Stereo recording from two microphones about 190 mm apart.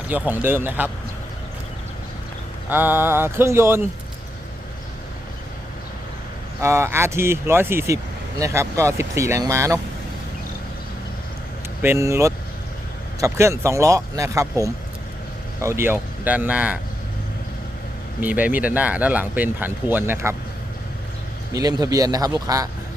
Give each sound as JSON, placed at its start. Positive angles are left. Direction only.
{"t": 0.1, "sound": "speech", "side_deg": -10}
{"t": 2.6, "sound": "speech", "side_deg": -10}
{"t": 6.6, "sound": "speech", "side_deg": -15}
{"t": 11.8, "sound": "speech", "side_deg": -15}
{"t": 18.2, "sound": "speech", "side_deg": -10}
{"t": 21.5, "sound": "a man's voice", "side_deg": -20}